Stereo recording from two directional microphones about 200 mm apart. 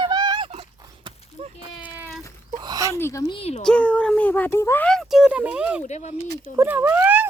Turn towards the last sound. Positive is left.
turn(degrees=-10)  # may be behind; listen again after turning